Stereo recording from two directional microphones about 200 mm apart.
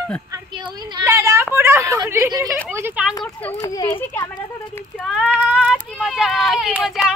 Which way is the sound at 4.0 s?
10° left (ahead or behind).